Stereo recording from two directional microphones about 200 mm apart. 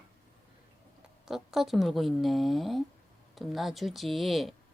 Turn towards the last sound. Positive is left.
turn(degrees=0)  # may be behind; listen again after turning